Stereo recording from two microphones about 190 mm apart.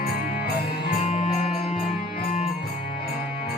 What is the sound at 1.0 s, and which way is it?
Music, 35° left (ahead or behind).